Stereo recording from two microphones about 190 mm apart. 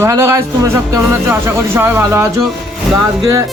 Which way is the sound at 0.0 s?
15° right (ahead or behind).